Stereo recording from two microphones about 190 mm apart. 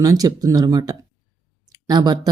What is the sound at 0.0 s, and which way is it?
Speech, 20° right (ahead or behind).